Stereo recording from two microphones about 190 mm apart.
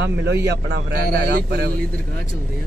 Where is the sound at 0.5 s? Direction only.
55° right (ahead or behind).